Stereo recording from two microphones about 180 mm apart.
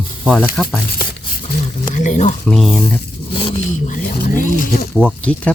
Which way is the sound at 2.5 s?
Centre (ahead or behind).